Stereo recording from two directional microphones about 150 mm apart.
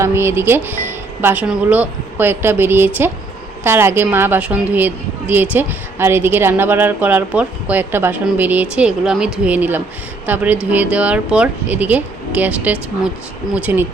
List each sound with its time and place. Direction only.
0.0 s a woman's voice: 15° right (ahead or behind)